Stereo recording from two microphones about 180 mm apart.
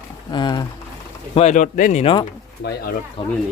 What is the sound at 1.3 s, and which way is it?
Speech, 40° left (ahead or behind).